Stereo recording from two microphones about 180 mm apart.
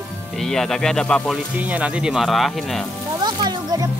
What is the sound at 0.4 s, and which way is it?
Speech, centre (ahead or behind).